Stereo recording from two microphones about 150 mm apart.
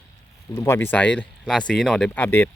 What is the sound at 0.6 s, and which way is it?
Speech, 15° left (ahead or behind).